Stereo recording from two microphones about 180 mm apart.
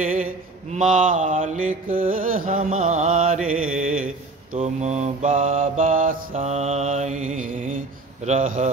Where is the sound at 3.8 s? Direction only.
50° right (ahead or behind).